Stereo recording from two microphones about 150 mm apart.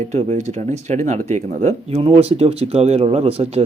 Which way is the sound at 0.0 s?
45° right (ahead or behind).